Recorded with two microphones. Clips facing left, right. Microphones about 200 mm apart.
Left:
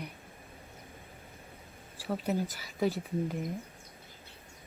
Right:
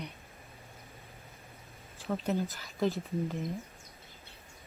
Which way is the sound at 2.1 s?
10° left (ahead or behind).